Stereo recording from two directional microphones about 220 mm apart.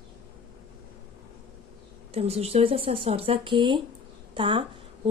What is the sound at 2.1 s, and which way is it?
Speech, 25° right (ahead or behind).